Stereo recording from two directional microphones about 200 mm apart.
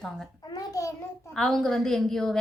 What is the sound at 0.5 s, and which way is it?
Child singing, 15° left (ahead or behind).